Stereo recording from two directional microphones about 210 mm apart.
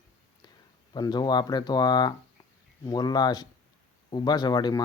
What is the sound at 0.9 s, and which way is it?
Speech, 20° left (ahead or behind).